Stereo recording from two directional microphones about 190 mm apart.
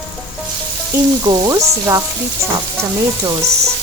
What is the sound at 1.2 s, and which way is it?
Frying, 20° right (ahead or behind).